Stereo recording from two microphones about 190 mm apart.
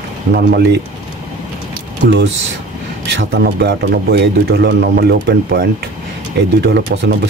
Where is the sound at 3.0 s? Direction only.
65° right (ahead or behind).